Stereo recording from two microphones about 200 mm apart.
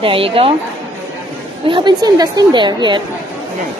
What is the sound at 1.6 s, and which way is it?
A woman's voice, 25° right (ahead or behind).